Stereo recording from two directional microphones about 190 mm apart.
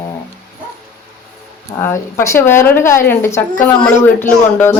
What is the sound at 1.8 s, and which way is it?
A woman's voice, 15° left (ahead or behind).